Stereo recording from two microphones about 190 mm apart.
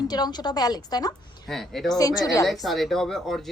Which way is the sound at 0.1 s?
20° left (ahead or behind).